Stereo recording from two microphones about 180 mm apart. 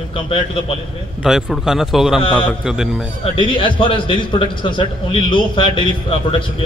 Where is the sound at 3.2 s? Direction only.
30° left (ahead or behind).